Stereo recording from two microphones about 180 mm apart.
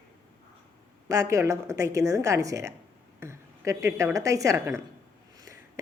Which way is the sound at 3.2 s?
15° right (ahead or behind).